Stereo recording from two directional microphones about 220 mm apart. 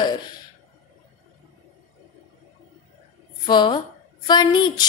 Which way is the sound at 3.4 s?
20° left (ahead or behind).